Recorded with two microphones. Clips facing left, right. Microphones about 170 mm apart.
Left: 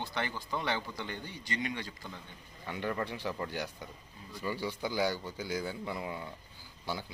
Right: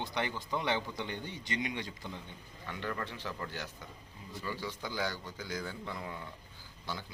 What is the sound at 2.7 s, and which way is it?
Speech, 15° left (ahead or behind).